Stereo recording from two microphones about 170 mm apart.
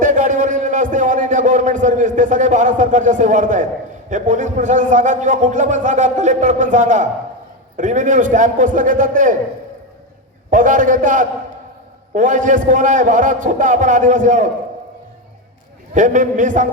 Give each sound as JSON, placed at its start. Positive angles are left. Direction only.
{"t": 0.0, "sound": "a sound", "side_deg": -50}
{"t": 4.1, "sound": "a man's voice", "side_deg": -45}
{"t": 10.5, "sound": "a man's voice", "side_deg": -50}
{"t": 16.0, "sound": "a man's voice", "side_deg": -50}